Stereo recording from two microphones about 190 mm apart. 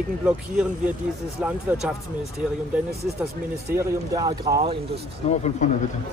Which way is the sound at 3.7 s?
20° right (ahead or behind).